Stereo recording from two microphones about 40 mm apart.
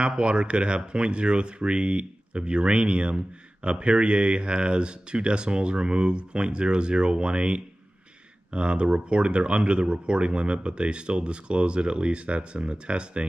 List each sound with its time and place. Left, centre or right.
0.0 s speech: right